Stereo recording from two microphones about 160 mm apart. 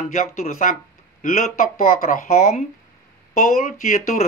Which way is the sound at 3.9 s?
50° left (ahead or behind).